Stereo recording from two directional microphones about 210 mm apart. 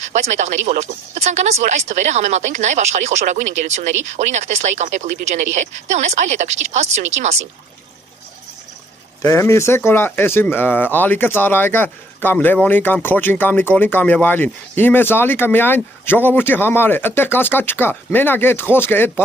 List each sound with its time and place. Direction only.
0.1 s speech: 35° right (ahead or behind)
9.2 s speech: 10° left (ahead or behind)